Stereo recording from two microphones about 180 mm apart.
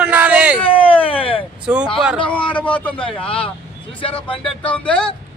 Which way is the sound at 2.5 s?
10° left (ahead or behind).